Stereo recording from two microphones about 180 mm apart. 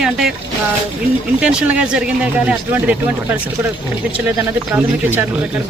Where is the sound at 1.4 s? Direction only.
5° right (ahead or behind).